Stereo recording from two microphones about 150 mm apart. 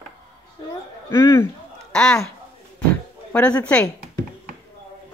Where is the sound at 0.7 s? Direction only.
20° left (ahead or behind).